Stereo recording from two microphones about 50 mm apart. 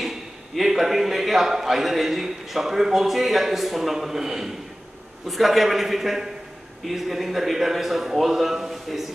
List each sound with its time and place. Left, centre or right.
0.0 s a man's voice: centre